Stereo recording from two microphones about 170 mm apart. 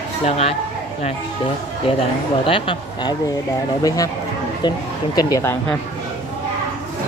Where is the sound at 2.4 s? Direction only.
30° left (ahead or behind).